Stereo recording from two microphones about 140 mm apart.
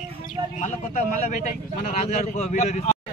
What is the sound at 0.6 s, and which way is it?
Speech, 65° left (ahead or behind).